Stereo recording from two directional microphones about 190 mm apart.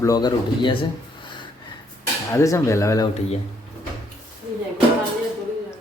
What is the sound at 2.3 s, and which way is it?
Speech, 15° left (ahead or behind).